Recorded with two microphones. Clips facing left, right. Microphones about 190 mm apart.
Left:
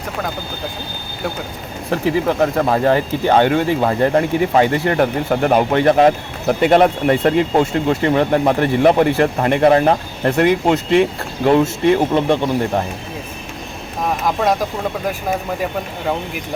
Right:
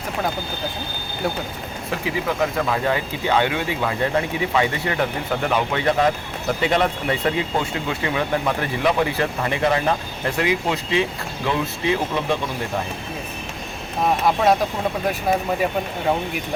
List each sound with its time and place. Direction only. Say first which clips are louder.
1.9 s speech: left 8 dB; 50° left (ahead or behind)